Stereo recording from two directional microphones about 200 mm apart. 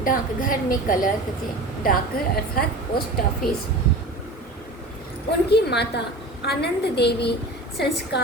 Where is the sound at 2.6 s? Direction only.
45° left (ahead or behind).